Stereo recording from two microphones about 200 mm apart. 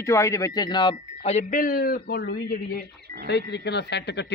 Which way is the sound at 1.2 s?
40° left (ahead or behind).